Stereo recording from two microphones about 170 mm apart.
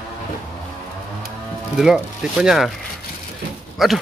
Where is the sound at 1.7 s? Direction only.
5° right (ahead or behind).